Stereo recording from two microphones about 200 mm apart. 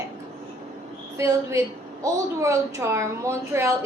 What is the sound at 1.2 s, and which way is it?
A woman's voice, 15° right (ahead or behind).